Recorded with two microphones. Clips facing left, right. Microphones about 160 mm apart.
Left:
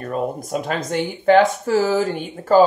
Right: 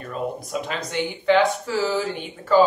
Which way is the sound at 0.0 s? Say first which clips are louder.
Left 4 dB; 50° left (ahead or behind).